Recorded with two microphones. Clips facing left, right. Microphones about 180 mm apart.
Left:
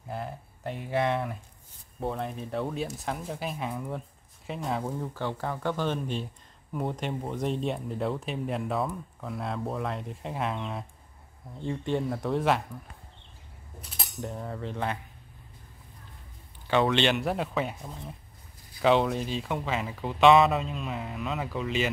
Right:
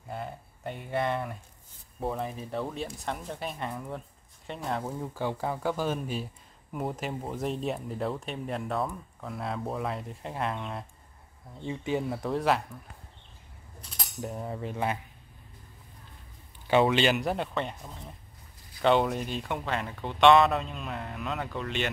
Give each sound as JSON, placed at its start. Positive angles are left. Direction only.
{"t": 0.1, "sound": "speech", "side_deg": 0}
{"t": 14.4, "sound": "cutlery", "side_deg": -15}
{"t": 16.6, "sound": "speech", "side_deg": -15}
{"t": 16.9, "sound": "speech", "side_deg": 0}
{"t": 18.8, "sound": "speech", "side_deg": 0}